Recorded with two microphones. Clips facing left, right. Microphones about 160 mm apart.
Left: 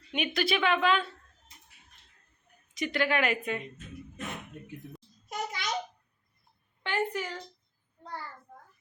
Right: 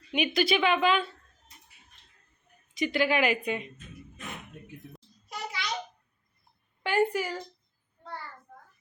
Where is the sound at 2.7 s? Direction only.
Centre (ahead or behind).